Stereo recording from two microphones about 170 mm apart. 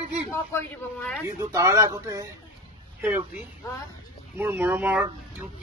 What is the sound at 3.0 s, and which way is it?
A man's voice, 15° right (ahead or behind).